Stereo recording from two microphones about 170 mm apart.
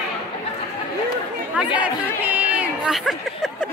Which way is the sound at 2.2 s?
10° right (ahead or behind).